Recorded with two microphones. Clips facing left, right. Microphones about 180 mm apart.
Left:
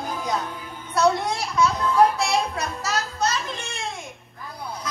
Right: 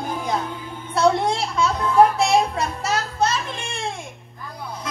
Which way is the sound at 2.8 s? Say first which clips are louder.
Right 3 dB; 25° right (ahead or behind).